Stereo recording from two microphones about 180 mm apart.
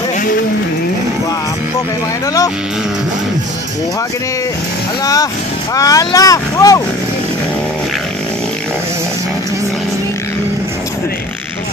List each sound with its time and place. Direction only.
5.0 s speech: 20° left (ahead or behind)